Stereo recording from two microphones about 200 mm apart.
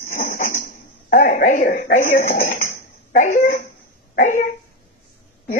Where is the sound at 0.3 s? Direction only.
45° left (ahead or behind).